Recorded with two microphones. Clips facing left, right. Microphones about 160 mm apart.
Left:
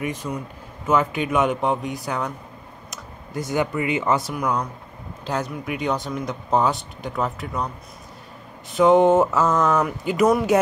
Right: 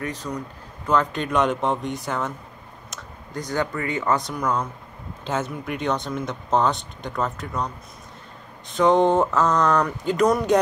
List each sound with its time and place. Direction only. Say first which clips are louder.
0.0 s speech: left 2 dB; 10° left (ahead or behind)
3.4 s speech: left 3 dB; 15° left (ahead or behind)
4.2 s speech: left 1 dB; 5° left (ahead or behind)
8.7 s speech: left 3 dB; 5° left (ahead or behind)